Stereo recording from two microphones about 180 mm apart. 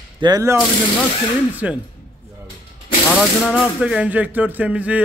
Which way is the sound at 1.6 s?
5° right (ahead or behind).